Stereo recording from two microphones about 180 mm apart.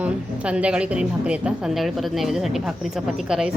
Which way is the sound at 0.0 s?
5° right (ahead or behind).